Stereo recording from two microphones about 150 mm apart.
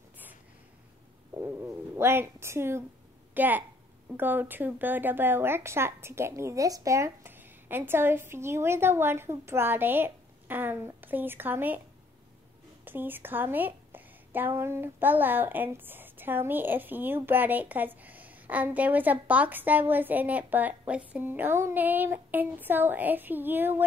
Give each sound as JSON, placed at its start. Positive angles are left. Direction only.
{"t": 1.4, "sound": "a woman's voice", "side_deg": -20}
{"t": 12.8, "sound": "a woman's voice", "side_deg": -15}